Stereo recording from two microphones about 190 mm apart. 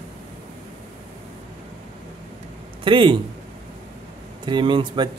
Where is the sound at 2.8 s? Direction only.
25° right (ahead or behind).